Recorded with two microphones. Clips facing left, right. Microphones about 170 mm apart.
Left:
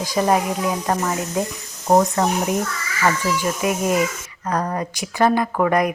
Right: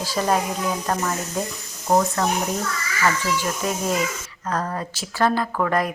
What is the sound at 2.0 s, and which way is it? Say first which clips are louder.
Speech: left 2 dB; 20° left (ahead or behind).